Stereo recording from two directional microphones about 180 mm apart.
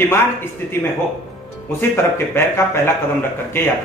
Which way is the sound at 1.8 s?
15° left (ahead or behind).